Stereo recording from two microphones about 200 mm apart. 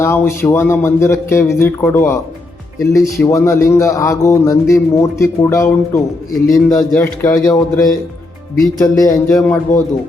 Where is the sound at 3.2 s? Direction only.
15° left (ahead or behind).